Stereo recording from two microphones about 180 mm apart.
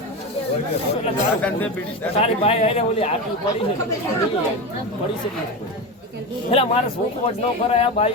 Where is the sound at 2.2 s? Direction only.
35° left (ahead or behind).